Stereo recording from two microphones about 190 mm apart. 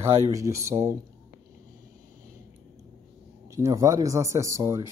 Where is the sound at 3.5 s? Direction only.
15° right (ahead or behind).